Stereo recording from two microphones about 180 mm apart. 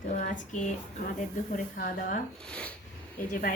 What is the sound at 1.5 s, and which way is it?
Speech, 50° left (ahead or behind).